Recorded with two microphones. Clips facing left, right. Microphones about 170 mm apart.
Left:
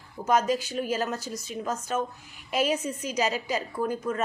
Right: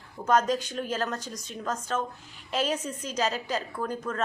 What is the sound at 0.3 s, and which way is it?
A woman's voice, 10° left (ahead or behind).